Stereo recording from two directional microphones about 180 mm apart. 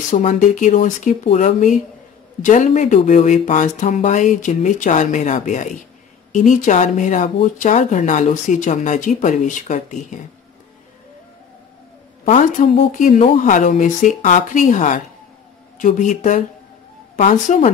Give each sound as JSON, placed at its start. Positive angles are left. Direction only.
{"t": 0.1, "sound": "speech", "side_deg": 45}
{"t": 12.3, "sound": "speech", "side_deg": 45}